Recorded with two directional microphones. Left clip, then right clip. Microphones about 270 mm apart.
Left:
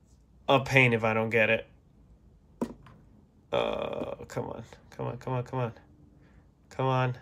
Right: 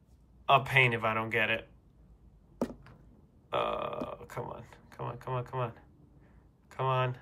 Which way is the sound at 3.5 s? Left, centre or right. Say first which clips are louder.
Left 3 dB; centre.